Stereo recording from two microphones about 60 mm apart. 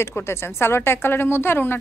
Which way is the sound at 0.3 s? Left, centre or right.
Left.